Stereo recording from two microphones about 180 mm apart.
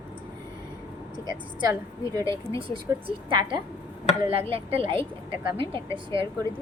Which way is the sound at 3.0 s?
25° right (ahead or behind).